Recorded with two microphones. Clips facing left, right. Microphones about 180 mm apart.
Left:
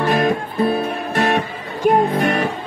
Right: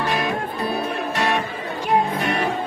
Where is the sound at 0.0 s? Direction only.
50° left (ahead or behind).